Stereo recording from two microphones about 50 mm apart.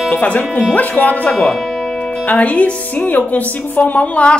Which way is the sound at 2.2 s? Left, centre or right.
Left.